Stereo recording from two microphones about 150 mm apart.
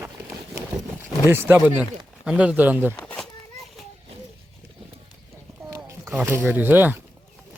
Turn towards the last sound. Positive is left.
turn(degrees=-10)  # may be behind; listen again after turning